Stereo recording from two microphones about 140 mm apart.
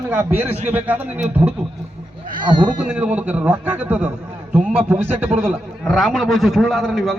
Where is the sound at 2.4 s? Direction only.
35° right (ahead or behind).